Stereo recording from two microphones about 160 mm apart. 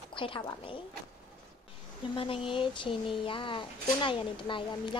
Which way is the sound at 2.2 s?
35° left (ahead or behind).